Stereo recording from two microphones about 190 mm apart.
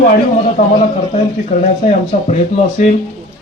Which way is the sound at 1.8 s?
35° left (ahead or behind).